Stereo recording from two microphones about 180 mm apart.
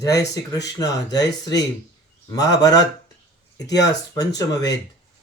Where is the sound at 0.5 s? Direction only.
20° left (ahead or behind).